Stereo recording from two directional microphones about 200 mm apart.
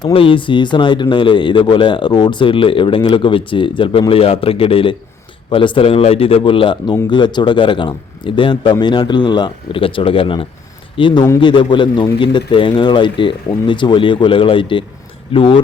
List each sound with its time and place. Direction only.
0.0 s a man's voice: 25° left (ahead or behind)